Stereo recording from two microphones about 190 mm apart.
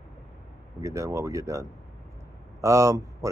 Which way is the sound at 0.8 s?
15° right (ahead or behind).